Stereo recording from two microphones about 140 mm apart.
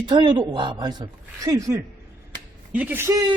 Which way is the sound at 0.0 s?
35° right (ahead or behind).